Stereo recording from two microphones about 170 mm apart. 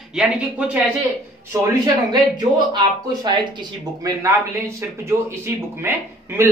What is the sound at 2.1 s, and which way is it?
Speech, 25° right (ahead or behind).